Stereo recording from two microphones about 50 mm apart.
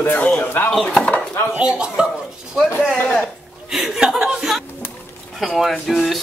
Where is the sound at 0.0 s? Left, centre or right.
Left.